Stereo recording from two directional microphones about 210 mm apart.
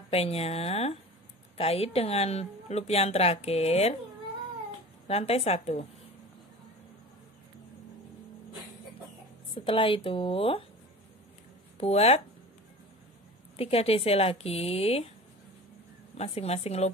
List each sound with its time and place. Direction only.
0.1 s a woman's voice: 30° left (ahead or behind)
5.0 s a woman's voice: 30° left (ahead or behind)
9.5 s a woman's voice: 25° left (ahead or behind)
11.8 s a woman's voice: 30° left (ahead or behind)
13.6 s a woman's voice: 30° left (ahead or behind)
16.2 s a woman's voice: 30° left (ahead or behind)